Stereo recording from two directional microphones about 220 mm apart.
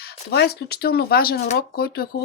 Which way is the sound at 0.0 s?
45° left (ahead or behind).